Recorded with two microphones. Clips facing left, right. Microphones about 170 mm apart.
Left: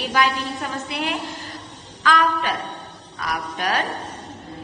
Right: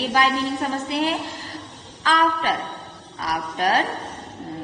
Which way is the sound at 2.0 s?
30° right (ahead or behind).